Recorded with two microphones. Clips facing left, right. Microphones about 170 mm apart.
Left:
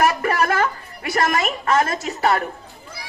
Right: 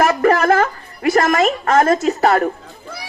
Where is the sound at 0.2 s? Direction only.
40° right (ahead or behind).